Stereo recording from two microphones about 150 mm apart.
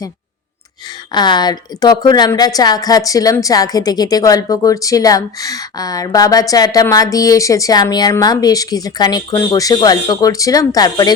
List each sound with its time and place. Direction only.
1.1 s a woman's voice: 30° left (ahead or behind)